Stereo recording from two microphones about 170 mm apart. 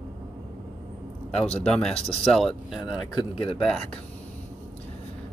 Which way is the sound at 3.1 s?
30° left (ahead or behind).